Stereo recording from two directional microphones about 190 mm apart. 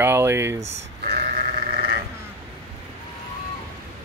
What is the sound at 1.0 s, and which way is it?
Sheep, 55° right (ahead or behind).